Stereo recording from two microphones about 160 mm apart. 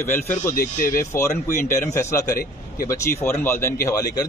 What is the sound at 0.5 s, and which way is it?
Speech, 60° left (ahead or behind).